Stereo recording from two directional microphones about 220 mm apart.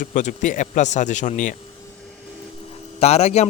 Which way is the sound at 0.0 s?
35° left (ahead or behind).